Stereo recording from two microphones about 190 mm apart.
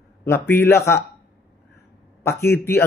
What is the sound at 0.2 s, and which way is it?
Speech, 10° left (ahead or behind).